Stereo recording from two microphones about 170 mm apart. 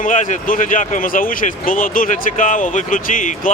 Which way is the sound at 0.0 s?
50° left (ahead or behind).